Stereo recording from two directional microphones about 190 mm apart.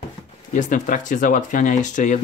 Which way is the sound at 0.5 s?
40° left (ahead or behind).